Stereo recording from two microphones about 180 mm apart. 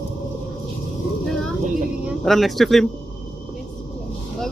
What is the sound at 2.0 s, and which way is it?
Speech, centre (ahead or behind).